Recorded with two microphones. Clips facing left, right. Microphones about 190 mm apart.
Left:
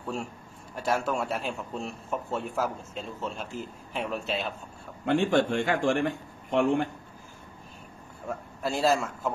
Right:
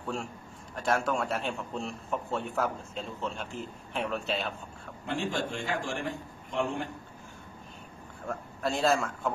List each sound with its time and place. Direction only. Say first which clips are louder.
0.0 s a man's voice: left 1 dB; centre (ahead or behind)
5.0 s a man's voice: left 9 dB; 60° left (ahead or behind)
8.3 s a man's voice: left 1 dB; 5° left (ahead or behind)